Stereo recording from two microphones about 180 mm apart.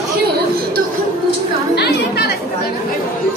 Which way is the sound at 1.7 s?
60° left (ahead or behind).